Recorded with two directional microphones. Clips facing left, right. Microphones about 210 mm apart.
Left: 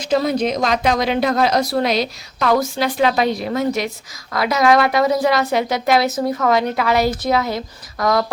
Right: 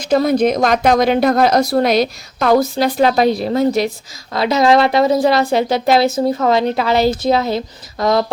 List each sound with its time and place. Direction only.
0.0 s speech: 50° right (ahead or behind)
2.5 s a woman's voice: 35° right (ahead or behind)